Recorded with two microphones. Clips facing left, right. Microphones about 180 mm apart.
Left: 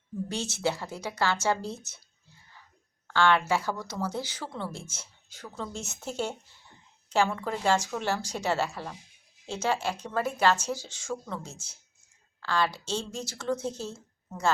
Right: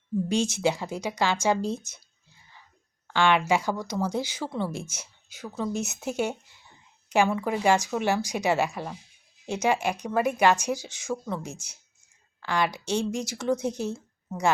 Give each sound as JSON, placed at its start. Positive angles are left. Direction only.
{"t": 0.3, "sound": "speech", "side_deg": -15}
{"t": 3.1, "sound": "speech", "side_deg": -15}